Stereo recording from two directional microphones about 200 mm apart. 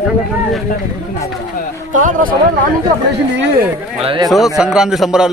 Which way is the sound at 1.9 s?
40° right (ahead or behind).